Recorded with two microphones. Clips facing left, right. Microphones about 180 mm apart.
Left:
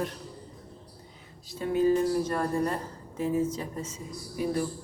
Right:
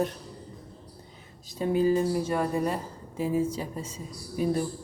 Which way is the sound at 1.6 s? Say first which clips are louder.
Right 3 dB; 20° right (ahead or behind).